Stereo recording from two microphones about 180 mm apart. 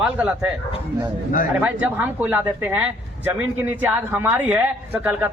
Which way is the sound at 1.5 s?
10° right (ahead or behind).